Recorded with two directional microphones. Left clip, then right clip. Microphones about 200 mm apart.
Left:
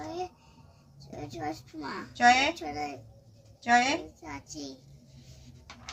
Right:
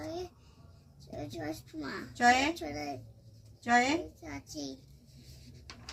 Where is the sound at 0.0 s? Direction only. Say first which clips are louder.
Left 4 dB; 10° right (ahead or behind).